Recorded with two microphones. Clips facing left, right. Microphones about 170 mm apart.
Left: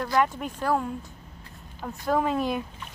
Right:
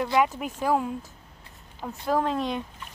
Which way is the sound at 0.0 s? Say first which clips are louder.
Right 1 dB; 5° right (ahead or behind).